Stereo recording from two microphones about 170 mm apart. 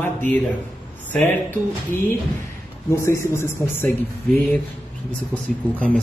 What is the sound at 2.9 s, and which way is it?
Speech, 15° left (ahead or behind).